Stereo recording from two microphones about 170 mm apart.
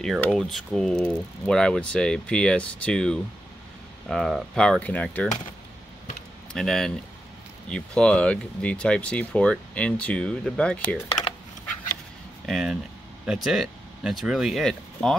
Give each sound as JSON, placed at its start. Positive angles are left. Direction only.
{"t": 0.0, "sound": "speech", "side_deg": 0}
{"t": 6.5, "sound": "speech", "side_deg": 0}
{"t": 12.4, "sound": "speech", "side_deg": 0}